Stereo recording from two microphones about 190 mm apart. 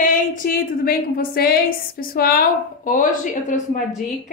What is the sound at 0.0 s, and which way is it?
A woman's voice, 45° left (ahead or behind).